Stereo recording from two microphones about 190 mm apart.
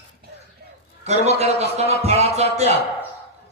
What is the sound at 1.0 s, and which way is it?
A man's voice, 35° right (ahead or behind).